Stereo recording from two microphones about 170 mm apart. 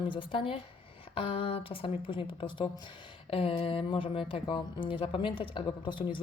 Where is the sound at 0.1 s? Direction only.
30° left (ahead or behind).